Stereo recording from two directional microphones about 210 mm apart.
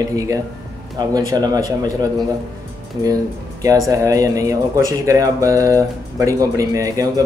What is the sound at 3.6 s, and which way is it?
Speech, 15° right (ahead or behind).